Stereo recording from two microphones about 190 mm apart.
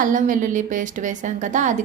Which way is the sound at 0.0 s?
45° right (ahead or behind).